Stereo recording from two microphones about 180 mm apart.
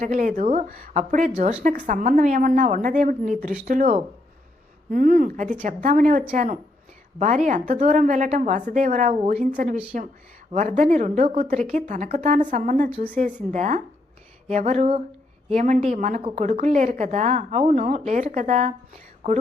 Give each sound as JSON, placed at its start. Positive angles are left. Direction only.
{"t": 0.0, "sound": "a woman's voice", "side_deg": -45}